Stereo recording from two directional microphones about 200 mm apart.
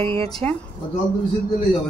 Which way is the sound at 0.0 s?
30° right (ahead or behind).